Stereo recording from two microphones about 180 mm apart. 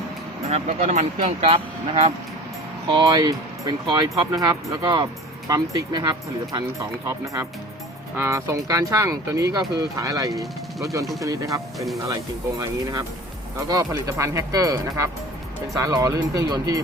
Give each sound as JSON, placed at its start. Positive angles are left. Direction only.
{"t": 0.5, "sound": "speech", "side_deg": -40}
{"t": 2.9, "sound": "speech", "side_deg": -20}
{"t": 8.1, "sound": "speech", "side_deg": -15}
{"t": 10.3, "sound": "speech", "side_deg": 0}
{"t": 11.2, "sound": "speech", "side_deg": -20}